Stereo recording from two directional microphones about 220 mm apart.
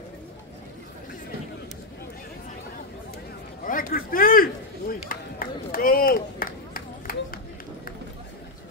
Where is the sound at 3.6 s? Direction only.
40° left (ahead or behind).